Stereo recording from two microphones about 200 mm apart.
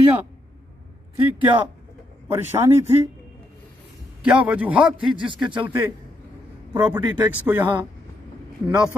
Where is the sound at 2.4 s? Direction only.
10° right (ahead or behind).